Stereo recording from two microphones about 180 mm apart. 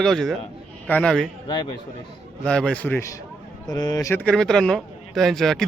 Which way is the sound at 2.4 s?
5° left (ahead or behind).